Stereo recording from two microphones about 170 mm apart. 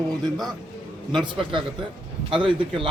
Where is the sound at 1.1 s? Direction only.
30° right (ahead or behind).